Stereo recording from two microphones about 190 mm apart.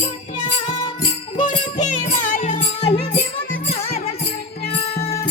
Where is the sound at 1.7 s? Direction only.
40° left (ahead or behind).